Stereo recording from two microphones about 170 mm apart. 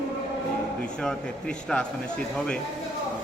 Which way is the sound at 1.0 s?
5° left (ahead or behind).